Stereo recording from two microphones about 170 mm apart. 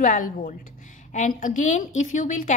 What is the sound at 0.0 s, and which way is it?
A woman's voice, 50° left (ahead or behind).